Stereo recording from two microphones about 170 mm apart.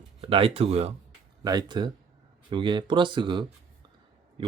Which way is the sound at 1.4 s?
25° right (ahead or behind).